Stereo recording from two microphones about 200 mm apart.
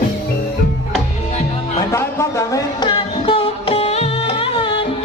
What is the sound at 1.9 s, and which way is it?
Music, 15° left (ahead or behind).